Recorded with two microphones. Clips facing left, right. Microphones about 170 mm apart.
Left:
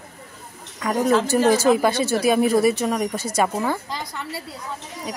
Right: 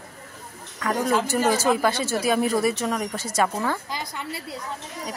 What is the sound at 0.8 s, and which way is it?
A woman's voice, 15° left (ahead or behind).